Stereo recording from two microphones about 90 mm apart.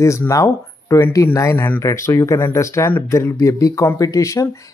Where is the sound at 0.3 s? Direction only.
35° left (ahead or behind).